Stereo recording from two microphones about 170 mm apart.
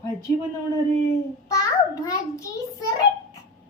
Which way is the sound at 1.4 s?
20° left (ahead or behind).